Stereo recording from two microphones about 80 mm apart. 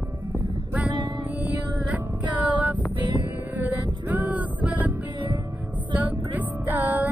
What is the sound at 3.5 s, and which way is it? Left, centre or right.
Music, right.